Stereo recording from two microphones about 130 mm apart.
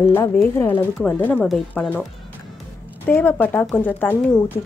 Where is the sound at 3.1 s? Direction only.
15° left (ahead or behind).